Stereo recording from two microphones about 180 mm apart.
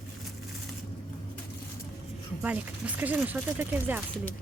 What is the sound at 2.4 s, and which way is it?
Speech, 5° right (ahead or behind).